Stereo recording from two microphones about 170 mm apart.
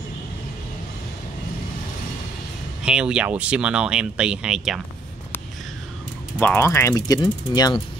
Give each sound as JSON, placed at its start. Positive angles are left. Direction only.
{"t": 2.8, "sound": "speech", "side_deg": -5}
{"t": 6.4, "sound": "speech", "side_deg": 15}